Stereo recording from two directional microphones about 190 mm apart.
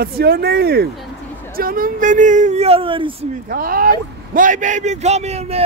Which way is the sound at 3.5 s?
50° right (ahead or behind).